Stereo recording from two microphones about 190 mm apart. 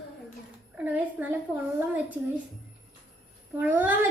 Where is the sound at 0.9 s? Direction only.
10° right (ahead or behind).